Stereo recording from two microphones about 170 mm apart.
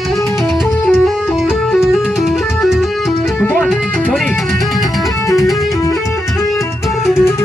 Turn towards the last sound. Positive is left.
turn(degrees=15)  # may be behind; listen again after turning